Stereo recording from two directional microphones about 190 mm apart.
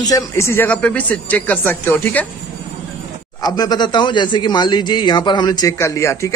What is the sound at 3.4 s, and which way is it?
Speech, 20° left (ahead or behind).